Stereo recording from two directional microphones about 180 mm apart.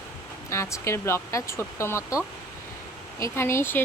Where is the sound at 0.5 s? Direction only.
15° left (ahead or behind).